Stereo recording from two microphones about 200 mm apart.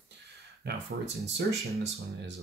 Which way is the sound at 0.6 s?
55° right (ahead or behind).